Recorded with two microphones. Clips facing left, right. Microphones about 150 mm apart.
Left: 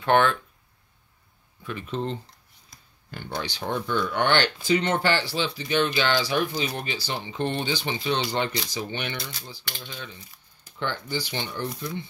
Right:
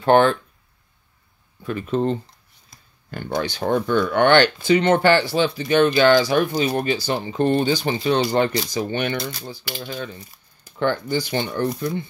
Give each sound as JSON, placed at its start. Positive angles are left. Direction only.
{"t": 0.0, "sound": "speech", "side_deg": -35}
{"t": 1.6, "sound": "speech", "side_deg": -45}